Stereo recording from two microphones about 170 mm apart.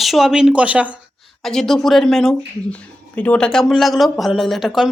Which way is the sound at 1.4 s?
Centre (ahead or behind).